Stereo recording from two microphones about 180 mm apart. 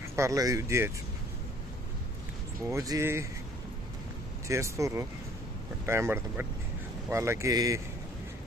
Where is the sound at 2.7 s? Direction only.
15° right (ahead or behind).